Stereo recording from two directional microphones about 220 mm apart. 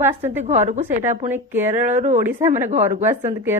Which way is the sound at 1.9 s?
35° right (ahead or behind).